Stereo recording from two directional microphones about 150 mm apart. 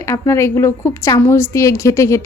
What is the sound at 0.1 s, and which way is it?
A woman's voice, 20° left (ahead or behind).